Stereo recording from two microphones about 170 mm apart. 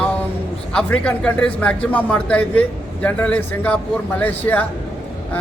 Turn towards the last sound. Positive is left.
turn(degrees=10)  # may be behind; listen again after turning